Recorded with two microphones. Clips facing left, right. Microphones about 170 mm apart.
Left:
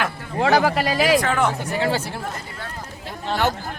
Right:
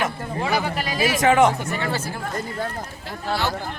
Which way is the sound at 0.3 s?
90° left.